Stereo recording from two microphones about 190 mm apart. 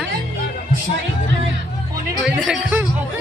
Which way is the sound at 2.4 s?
5° right (ahead or behind).